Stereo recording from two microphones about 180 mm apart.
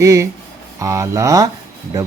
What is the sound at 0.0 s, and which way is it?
Speech, 15° right (ahead or behind).